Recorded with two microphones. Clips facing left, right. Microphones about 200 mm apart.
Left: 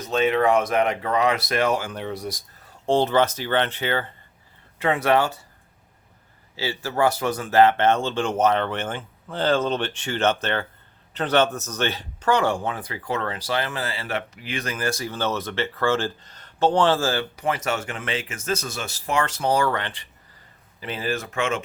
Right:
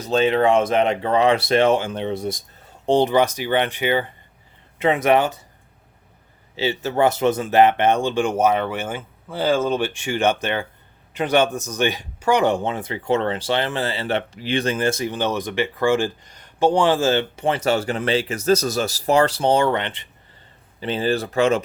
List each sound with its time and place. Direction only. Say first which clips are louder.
0.0 s speech: right 3 dB; 30° right (ahead or behind)
6.6 s speech: right 4 dB; 20° right (ahead or behind); by 21.6 s 35° right (ahead or behind)